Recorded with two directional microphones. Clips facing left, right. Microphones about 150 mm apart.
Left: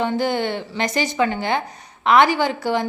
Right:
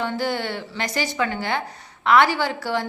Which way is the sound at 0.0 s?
20° left (ahead or behind).